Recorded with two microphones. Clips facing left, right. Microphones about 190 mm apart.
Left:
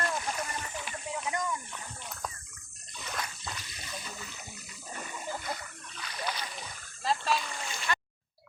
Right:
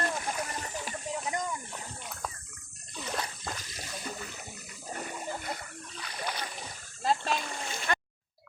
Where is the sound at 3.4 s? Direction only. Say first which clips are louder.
Right 3 dB; 45° right (ahead or behind).